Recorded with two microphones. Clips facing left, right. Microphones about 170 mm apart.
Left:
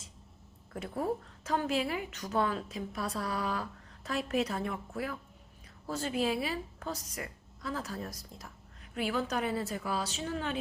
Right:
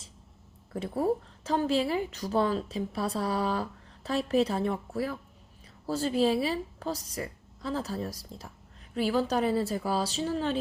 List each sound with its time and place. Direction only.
0.7 s speech: 30° right (ahead or behind)